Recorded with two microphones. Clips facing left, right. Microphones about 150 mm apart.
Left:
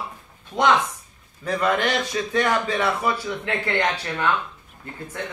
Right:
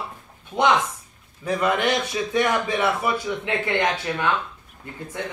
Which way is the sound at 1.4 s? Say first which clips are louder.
Right 1 dB; 15° right (ahead or behind).